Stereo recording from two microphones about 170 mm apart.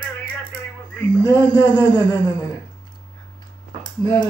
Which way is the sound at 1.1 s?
25° left (ahead or behind).